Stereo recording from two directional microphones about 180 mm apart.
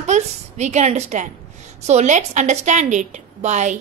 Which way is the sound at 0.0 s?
40° right (ahead or behind).